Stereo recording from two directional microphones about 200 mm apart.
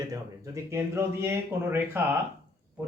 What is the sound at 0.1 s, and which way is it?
Speech, 15° right (ahead or behind).